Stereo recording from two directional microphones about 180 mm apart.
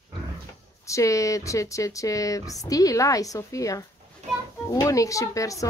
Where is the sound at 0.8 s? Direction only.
15° left (ahead or behind).